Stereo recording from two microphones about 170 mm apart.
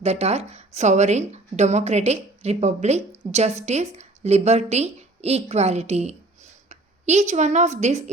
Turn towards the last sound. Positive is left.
turn(degrees=-40)  # may be behind; listen again after turning